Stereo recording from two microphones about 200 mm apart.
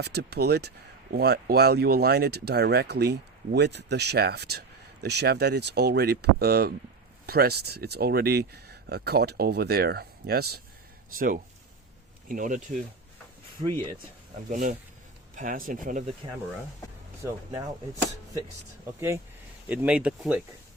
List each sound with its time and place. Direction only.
0.0 s speech: 55° right (ahead or behind)
12.3 s speech: 40° right (ahead or behind)
14.5 s speech: 40° right (ahead or behind)
17.2 s speech: 15° right (ahead or behind)
18.9 s speech: 15° right (ahead or behind)